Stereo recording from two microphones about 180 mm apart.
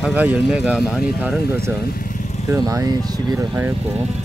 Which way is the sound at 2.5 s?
20° right (ahead or behind).